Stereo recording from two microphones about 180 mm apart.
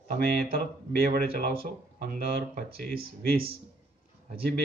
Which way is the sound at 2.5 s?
60° right (ahead or behind).